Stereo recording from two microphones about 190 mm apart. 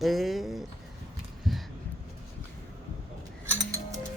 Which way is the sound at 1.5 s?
Centre (ahead or behind).